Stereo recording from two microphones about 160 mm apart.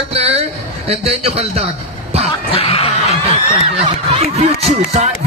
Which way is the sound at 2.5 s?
35° left (ahead or behind).